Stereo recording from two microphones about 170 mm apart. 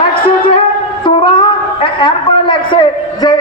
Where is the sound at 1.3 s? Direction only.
30° left (ahead or behind).